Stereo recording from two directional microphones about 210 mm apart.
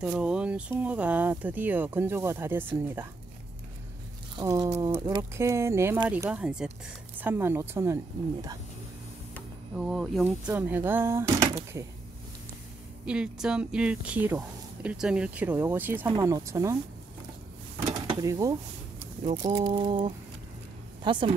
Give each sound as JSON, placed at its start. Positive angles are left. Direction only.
{"t": 0.0, "sound": "speech", "side_deg": -5}
{"t": 4.4, "sound": "speech", "side_deg": -15}
{"t": 9.8, "sound": "speech", "side_deg": 0}
{"t": 13.0, "sound": "speech", "side_deg": -5}
{"t": 17.8, "sound": "a sound", "side_deg": -20}
{"t": 19.3, "sound": "a woman's voice", "side_deg": -15}